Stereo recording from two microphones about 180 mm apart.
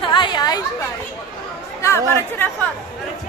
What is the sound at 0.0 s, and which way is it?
Chatter, 25° left (ahead or behind).